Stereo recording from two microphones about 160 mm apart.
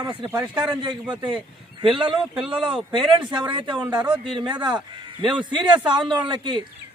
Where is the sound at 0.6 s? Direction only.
30° right (ahead or behind).